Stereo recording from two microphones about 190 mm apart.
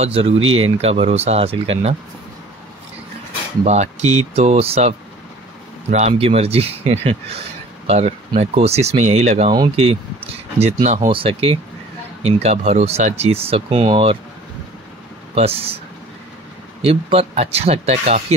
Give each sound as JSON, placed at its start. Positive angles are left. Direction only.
{"t": 0.0, "sound": "speech", "side_deg": -30}
{"t": 0.4, "sound": "speech", "side_deg": -90}
{"t": 0.7, "sound": "speech", "side_deg": -35}
{"t": 3.6, "sound": "speech", "side_deg": -35}
{"t": 15.3, "sound": "speech", "side_deg": -30}
{"t": 16.8, "sound": "speech", "side_deg": -30}